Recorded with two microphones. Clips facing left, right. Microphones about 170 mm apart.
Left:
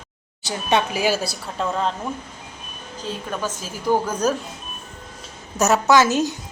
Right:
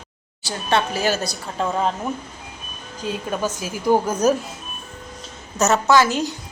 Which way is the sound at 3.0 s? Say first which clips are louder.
Right 3 dB; 10° right (ahead or behind).